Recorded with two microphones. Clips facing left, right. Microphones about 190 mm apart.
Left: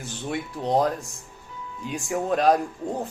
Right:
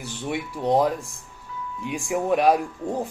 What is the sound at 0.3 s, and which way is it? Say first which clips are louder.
Speech: right 2 dB; 10° right (ahead or behind).